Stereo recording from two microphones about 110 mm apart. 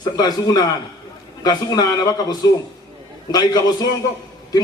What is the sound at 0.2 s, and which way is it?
A man's voice, 35° left (ahead or behind).